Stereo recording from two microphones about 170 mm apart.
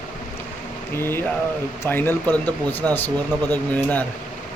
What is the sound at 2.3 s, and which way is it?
Speech, 20° right (ahead or behind).